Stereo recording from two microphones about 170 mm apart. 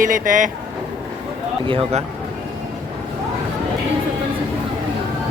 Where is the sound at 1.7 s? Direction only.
30° right (ahead or behind).